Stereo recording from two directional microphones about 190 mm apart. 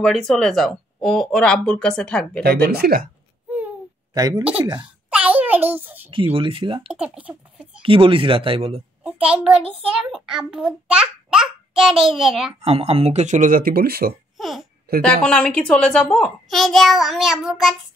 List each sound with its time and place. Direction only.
0.0 s a child's voice: centre (ahead or behind)
2.7 s speech: 55° right (ahead or behind)
4.1 s speech: 20° right (ahead or behind)
4.7 s babbling: 5° right (ahead or behind)
6.0 s speech: 25° right (ahead or behind)
6.9 s speech: 5° right (ahead or behind)
7.8 s speech: 30° right (ahead or behind)
9.0 s a child's voice: 5° right (ahead or behind)
12.6 s speech: 30° right (ahead or behind); by 14.1 s 55° right (ahead or behind)
14.4 s a child's voice: centre (ahead or behind)